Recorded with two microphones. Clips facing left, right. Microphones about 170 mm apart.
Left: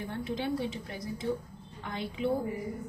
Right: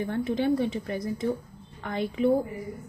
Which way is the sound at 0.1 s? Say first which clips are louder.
Right 7 dB; 55° right (ahead or behind).